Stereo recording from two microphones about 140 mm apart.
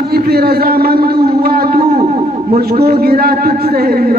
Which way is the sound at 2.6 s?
90° right.